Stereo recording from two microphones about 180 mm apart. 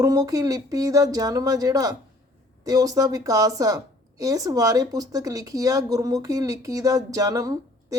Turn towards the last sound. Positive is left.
turn(degrees=-20)  # may be behind; listen again after turning